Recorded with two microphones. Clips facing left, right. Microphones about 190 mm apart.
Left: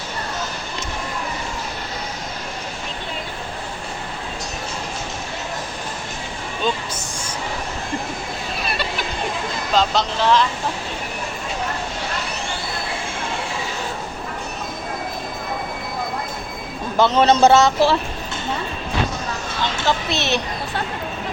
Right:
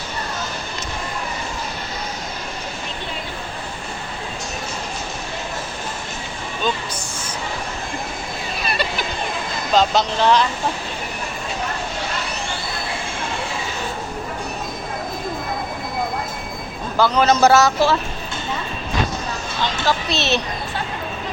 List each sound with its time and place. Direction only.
8.6 s a sound: centre (ahead or behind)
9.7 s speech: centre (ahead or behind)
17.0 s speech: 25° left (ahead or behind)
19.9 s speech: 20° left (ahead or behind)